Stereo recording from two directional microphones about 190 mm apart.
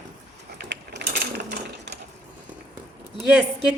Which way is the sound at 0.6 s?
65° right (ahead or behind).